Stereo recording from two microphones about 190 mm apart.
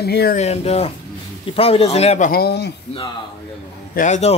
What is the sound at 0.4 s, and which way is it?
Speech, 35° left (ahead or behind).